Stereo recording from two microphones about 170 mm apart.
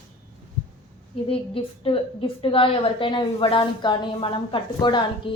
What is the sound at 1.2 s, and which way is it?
A woman's voice, 30° left (ahead or behind).